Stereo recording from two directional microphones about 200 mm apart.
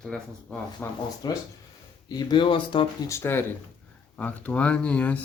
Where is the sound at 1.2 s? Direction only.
20° left (ahead or behind).